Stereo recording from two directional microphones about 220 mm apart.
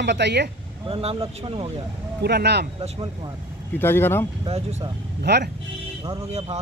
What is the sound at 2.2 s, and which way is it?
Speech, 50° right (ahead or behind).